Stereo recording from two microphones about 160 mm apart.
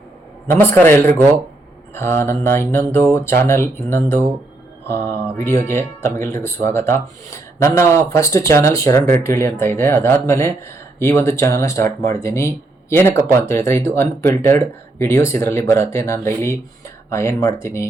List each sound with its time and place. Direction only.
0.4 s speech: 15° left (ahead or behind)